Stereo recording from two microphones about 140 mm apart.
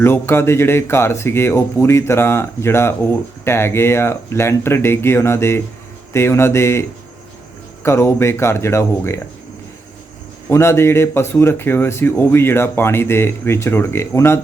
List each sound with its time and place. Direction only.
0.0 s speech: 15° left (ahead or behind)
7.9 s speech: 20° left (ahead or behind)
10.5 s speech: 20° left (ahead or behind)